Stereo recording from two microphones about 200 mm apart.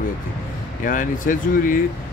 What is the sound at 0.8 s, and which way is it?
Speech, 40° left (ahead or behind).